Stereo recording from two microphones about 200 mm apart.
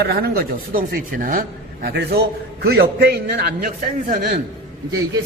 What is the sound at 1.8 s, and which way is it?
Speech, 55° right (ahead or behind).